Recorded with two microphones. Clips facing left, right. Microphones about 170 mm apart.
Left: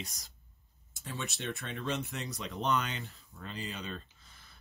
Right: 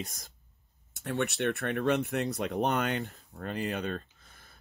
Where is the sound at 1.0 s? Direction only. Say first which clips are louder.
Right 10 dB; 65° right (ahead or behind).